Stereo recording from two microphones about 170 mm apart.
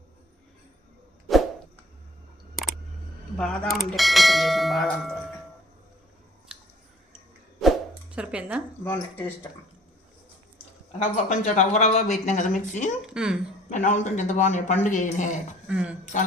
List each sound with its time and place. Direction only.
3.3 s bell: 5° left (ahead or behind)
6.5 s chewing: 5° right (ahead or behind)
8.1 s speech: 5° right (ahead or behind)
8.8 s speech: 10° left (ahead or behind)
11.0 s speech: 45° left (ahead or behind)
13.0 s bell: 5° right (ahead or behind)
13.7 s speech: 45° left (ahead or behind)
15.6 s speech: 5° right (ahead or behind)